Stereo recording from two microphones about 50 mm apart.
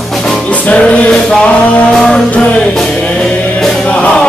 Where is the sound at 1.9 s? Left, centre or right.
Centre.